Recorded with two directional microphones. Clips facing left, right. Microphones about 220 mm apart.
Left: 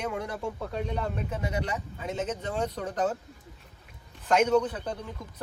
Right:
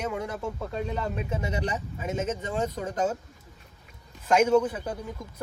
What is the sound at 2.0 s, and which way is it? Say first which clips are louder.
Speech: right 3 dB; 5° right (ahead or behind).